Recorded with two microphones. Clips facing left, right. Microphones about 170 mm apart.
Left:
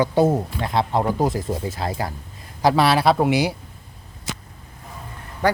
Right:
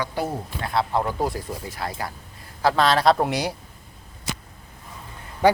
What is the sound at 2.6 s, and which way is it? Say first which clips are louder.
Speech: left 2 dB; 10° left (ahead or behind).